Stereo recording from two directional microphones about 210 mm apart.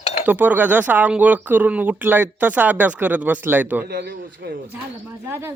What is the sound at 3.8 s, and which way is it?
Speech, 45° right (ahead or behind).